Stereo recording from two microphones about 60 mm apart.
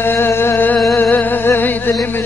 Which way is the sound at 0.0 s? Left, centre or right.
Left.